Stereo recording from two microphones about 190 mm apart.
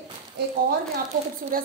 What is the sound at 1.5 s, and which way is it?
Speech, 50° right (ahead or behind).